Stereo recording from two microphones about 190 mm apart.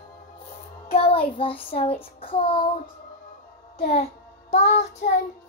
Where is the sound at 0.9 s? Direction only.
30° left (ahead or behind).